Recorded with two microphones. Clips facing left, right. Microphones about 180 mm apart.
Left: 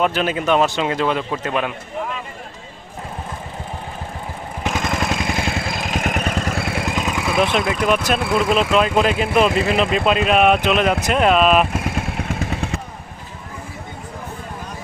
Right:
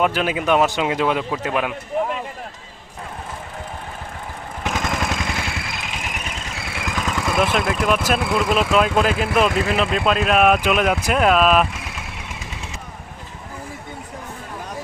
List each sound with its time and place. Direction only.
0.0 s speech: 10° right (ahead or behind)
4.6 s vehicle: 10° left (ahead or behind)
5.4 s vehicle: 35° left (ahead or behind)
6.0 s vehicle: 55° left (ahead or behind)
6.8 s vehicle: 20° left (ahead or behind)
7.2 s speech: 5° left (ahead or behind)
11.7 s vehicle: 50° left (ahead or behind)